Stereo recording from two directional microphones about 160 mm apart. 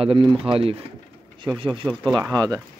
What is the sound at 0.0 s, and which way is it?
Speech, 30° right (ahead or behind).